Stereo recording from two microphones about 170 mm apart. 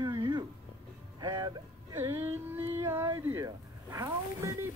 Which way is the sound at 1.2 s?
25° right (ahead or behind).